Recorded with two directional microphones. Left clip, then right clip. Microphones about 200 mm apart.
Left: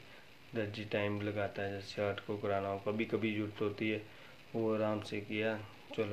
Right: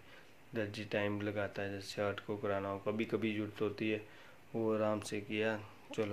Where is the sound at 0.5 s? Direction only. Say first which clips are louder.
Left 1 dB; 20° right (ahead or behind).